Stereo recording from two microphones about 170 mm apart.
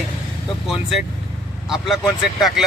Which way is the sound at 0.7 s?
Centre (ahead or behind).